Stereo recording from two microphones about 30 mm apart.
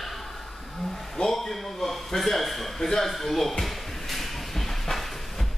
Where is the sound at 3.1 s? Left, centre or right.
Centre.